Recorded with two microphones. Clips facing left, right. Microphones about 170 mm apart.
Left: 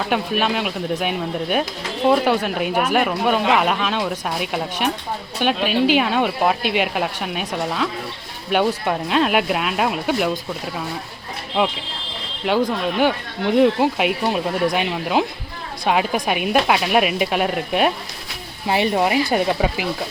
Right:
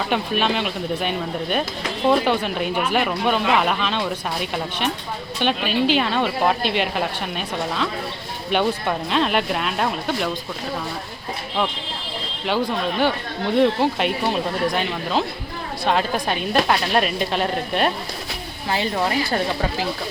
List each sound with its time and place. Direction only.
0.1 s speech: 5° left (ahead or behind)
13.6 s speech: 5° left (ahead or behind)
18.7 s speech: 20° left (ahead or behind)